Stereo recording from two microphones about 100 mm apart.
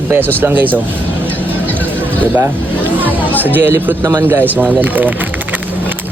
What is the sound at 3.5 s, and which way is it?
Speech, 20° right (ahead or behind).